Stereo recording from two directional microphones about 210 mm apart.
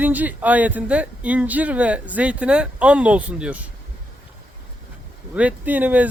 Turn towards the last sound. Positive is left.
turn(degrees=-5)  # may be behind; listen again after turning